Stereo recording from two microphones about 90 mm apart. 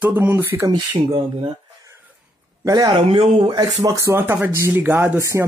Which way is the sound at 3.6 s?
40° right (ahead or behind).